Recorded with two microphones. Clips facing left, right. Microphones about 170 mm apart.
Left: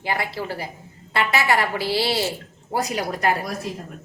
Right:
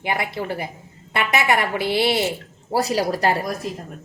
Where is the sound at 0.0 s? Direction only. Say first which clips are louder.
Right 1 dB; 20° right (ahead or behind).